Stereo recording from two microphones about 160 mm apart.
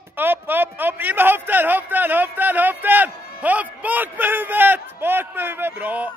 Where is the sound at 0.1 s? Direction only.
10° right (ahead or behind).